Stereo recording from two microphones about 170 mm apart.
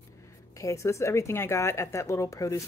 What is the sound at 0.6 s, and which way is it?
Speech, 15° left (ahead or behind).